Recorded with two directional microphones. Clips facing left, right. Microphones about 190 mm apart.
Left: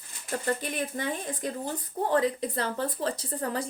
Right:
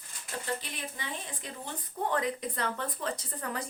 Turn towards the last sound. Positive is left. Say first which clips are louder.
# left 6 dB
turn(degrees=30)  # may be behind; listen again after turning